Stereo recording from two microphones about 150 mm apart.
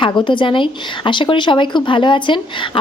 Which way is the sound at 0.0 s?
35° left (ahead or behind).